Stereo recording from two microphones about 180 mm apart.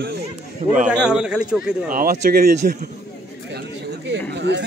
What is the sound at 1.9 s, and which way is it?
Speech, 55° right (ahead or behind).